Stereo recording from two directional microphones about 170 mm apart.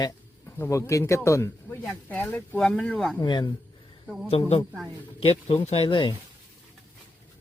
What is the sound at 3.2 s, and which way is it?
Speech, 25° left (ahead or behind).